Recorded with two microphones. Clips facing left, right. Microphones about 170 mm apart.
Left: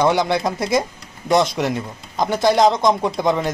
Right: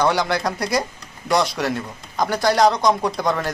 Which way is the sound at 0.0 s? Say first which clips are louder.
Left 2 dB; 20° left (ahead or behind).